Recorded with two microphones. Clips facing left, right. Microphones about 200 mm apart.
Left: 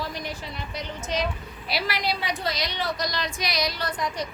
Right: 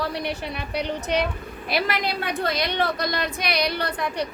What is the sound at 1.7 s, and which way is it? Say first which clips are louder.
A woman's voice: right 3 dB; 50° right (ahead or behind).